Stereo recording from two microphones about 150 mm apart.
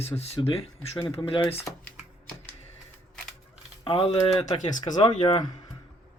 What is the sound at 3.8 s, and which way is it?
Speech, 35° left (ahead or behind).